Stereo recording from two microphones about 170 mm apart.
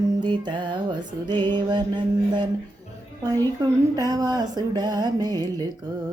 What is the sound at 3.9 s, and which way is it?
Music, 20° right (ahead or behind).